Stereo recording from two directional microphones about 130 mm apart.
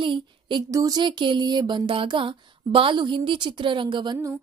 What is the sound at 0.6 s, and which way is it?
A woman's voice, 25° right (ahead or behind).